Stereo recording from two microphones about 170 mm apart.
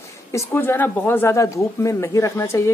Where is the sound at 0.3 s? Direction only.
15° left (ahead or behind).